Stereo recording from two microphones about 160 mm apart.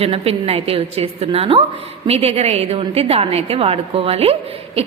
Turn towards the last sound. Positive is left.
turn(degrees=-35)  # may be behind; listen again after turning